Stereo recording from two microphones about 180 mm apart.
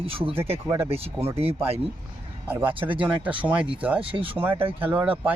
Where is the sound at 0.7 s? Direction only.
15° right (ahead or behind).